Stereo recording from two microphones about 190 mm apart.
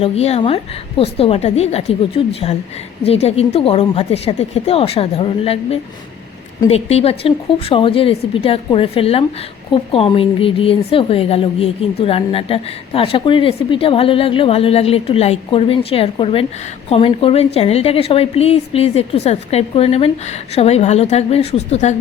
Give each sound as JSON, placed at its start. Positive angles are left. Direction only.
{"t": 0.0, "sound": "a woman's voice", "side_deg": 35}